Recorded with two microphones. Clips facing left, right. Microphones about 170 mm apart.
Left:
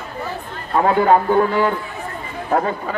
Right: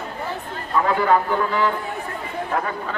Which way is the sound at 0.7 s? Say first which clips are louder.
Left 4 dB; 50° left (ahead or behind).